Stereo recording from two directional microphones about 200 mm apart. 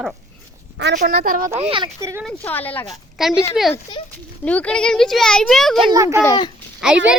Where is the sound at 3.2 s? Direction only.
Centre (ahead or behind).